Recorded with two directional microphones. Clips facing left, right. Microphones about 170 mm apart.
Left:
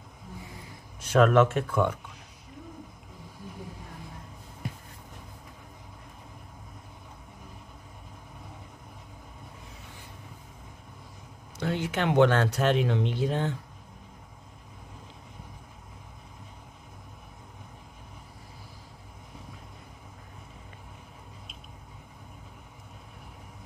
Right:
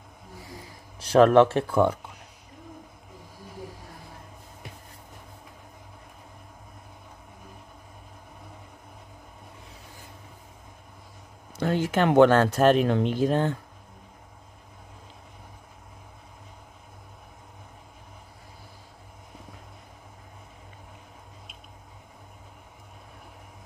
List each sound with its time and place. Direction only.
0.9 s speech: 35° right (ahead or behind)
11.6 s a sound: 45° right (ahead or behind)
12.5 s speech: 45° right (ahead or behind)